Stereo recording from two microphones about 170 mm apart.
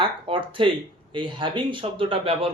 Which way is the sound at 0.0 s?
30° right (ahead or behind).